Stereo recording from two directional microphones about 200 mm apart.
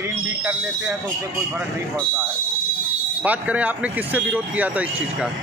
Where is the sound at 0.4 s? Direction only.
5° right (ahead or behind).